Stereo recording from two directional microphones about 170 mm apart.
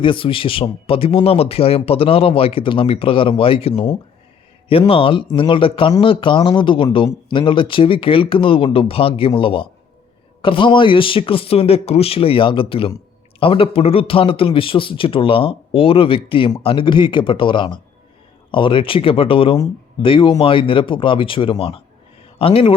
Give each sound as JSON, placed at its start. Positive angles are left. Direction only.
{"t": 0.0, "sound": "a man's voice", "side_deg": 30}